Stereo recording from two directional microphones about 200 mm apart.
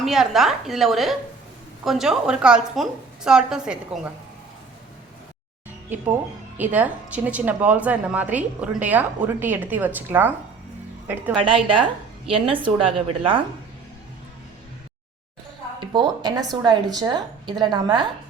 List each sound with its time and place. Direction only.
0.0 s a woman's voice: centre (ahead or behind)
6.6 s a woman's voice: 10° right (ahead or behind)
11.3 s speech: 25° right (ahead or behind)
15.8 s speech: 20° right (ahead or behind)